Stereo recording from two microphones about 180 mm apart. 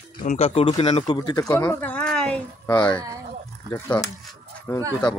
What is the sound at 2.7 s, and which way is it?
Speech, 25° left (ahead or behind).